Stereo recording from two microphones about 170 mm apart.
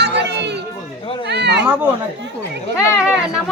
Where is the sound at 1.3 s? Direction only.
85° right.